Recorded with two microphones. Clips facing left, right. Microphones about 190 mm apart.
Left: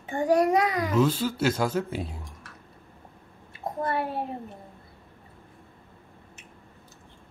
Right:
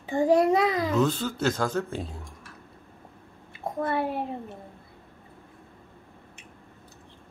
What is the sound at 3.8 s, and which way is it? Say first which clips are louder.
Speech: right 2 dB; 25° right (ahead or behind).